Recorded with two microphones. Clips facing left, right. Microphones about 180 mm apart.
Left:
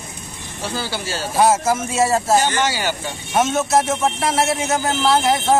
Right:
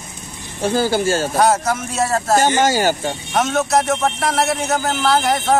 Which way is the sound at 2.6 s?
45° right (ahead or behind).